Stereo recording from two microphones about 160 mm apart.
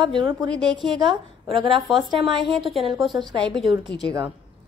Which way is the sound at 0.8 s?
30° right (ahead or behind).